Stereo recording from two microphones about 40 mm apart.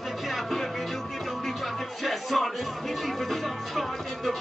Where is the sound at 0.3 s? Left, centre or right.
Centre.